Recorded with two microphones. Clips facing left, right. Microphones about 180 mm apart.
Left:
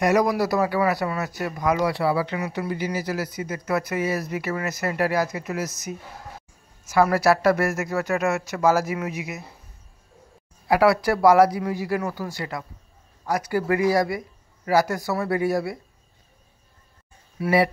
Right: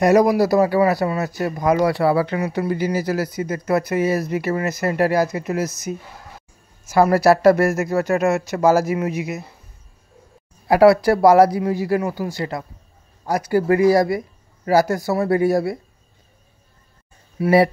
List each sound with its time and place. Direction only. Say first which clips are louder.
0.0 s speech: right 6 dB; 30° right (ahead or behind)
1.8 s speech: right 5 dB; 50° right (ahead or behind); by 9.4 s 30° right (ahead or behind)
10.7 s speech: right 6 dB; 35° right (ahead or behind)
17.4 s speech: right 6 dB; 25° right (ahead or behind)